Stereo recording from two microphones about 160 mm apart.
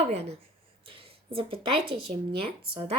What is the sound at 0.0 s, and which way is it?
Speech, 40° right (ahead or behind).